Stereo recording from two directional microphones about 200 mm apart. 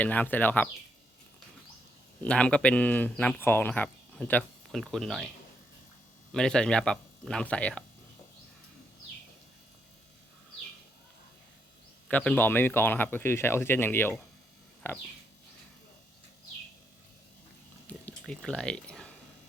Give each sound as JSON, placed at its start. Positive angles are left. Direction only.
{"t": 0.0, "sound": "speech", "side_deg": 10}
{"t": 2.2, "sound": "speech", "side_deg": 5}
{"t": 6.3, "sound": "speech", "side_deg": 5}
{"t": 12.0, "sound": "speech", "side_deg": 5}
{"t": 17.8, "sound": "a sound", "side_deg": 5}